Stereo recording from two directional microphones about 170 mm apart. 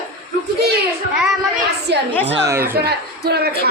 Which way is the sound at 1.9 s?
80° right.